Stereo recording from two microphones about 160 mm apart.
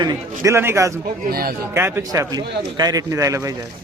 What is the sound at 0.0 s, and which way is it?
Speech, 20° right (ahead or behind).